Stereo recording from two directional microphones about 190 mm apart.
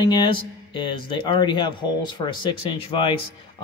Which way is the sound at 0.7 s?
25° left (ahead or behind).